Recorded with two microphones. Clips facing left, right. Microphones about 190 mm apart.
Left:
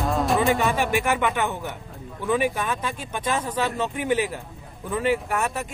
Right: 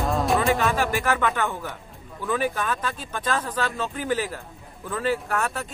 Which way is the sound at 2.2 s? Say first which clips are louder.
Left 2 dB; 20° left (ahead or behind).